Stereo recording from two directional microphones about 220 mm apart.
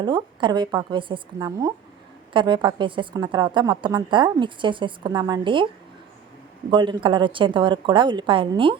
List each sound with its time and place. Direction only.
0.0 s a woman's voice: 20° right (ahead or behind)
6.7 s a woman's voice: 20° right (ahead or behind)